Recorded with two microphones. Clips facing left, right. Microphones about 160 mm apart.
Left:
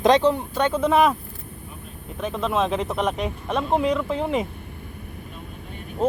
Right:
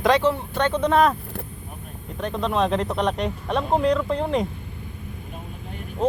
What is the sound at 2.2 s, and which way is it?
Speech, centre (ahead or behind).